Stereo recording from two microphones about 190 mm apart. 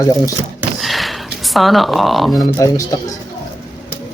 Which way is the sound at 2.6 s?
15° left (ahead or behind).